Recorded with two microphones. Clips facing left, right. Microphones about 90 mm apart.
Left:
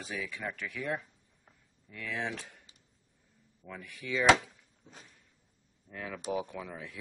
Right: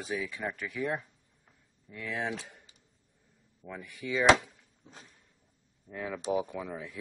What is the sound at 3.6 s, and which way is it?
Speech, 10° right (ahead or behind).